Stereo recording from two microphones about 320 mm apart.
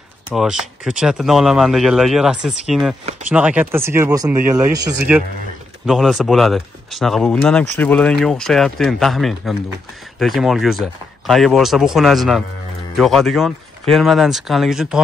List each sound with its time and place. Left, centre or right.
0.3 s speech: centre